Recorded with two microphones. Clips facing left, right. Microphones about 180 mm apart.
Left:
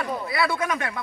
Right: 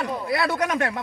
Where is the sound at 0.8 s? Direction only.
40° right (ahead or behind).